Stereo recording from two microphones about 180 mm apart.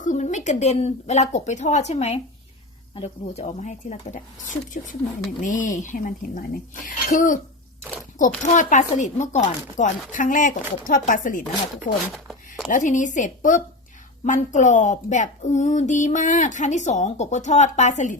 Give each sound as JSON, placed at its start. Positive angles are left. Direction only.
{"t": 0.0, "sound": "speech", "side_deg": 45}
{"t": 12.1, "sound": "a sound", "side_deg": 0}
{"t": 12.6, "sound": "speech", "side_deg": 45}